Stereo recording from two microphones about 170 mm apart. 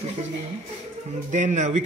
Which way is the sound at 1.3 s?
45° right (ahead or behind).